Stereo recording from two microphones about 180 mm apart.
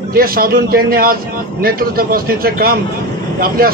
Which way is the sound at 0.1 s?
55° right (ahead or behind).